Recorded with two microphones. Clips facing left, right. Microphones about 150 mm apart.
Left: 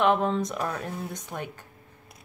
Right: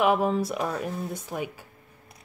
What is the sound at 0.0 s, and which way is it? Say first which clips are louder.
Speech: right 1 dB; 5° right (ahead or behind).